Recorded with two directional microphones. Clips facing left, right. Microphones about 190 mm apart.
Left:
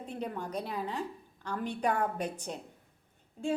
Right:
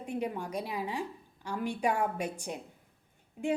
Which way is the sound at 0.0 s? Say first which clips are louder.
Right 3 dB; 10° right (ahead or behind).